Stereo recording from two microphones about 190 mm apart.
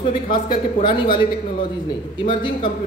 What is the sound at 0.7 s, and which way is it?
Speech, 25° left (ahead or behind).